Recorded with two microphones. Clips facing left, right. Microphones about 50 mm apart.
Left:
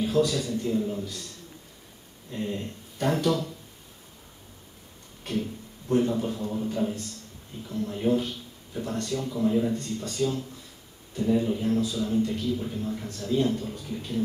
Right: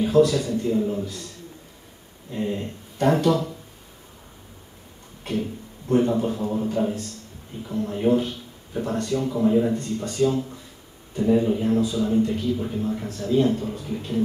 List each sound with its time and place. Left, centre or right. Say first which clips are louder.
0.3 s speech: right 4 dB; centre
2.3 s speech: right 4 dB; centre
5.2 s a man's voice: right 3 dB; centre